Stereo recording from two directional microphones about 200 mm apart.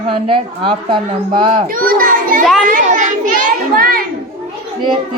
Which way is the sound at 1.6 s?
45° right (ahead or behind).